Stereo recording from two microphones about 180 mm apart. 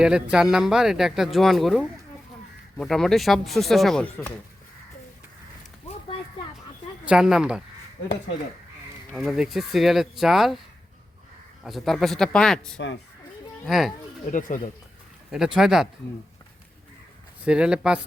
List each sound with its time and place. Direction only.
0.0 s speech: 5° right (ahead or behind)
7.0 s speech: 5° right (ahead or behind)
9.1 s speech: centre (ahead or behind)
11.6 s speech: centre (ahead or behind)
14.3 s speech: 45° left (ahead or behind)
15.3 s speech: 5° right (ahead or behind)
17.4 s speech: 5° right (ahead or behind)